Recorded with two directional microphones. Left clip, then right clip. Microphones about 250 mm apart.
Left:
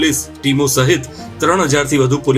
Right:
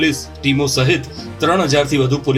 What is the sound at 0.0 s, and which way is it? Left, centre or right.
Speech, left.